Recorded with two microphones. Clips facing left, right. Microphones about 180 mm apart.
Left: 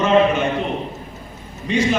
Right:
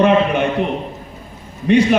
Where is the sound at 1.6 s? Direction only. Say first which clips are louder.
Right 6 dB; 60° right (ahead or behind).